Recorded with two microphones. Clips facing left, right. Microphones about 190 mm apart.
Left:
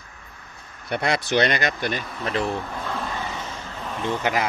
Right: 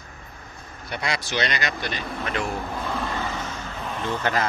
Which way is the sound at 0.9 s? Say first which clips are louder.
Left 6 dB; 55° left (ahead or behind).